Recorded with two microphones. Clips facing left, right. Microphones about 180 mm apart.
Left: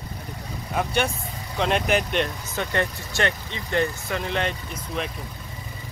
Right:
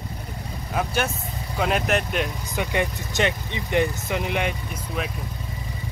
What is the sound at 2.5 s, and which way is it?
Speech, 15° right (ahead or behind).